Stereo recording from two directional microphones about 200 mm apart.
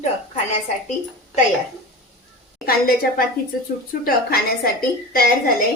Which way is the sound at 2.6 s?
50° left (ahead or behind).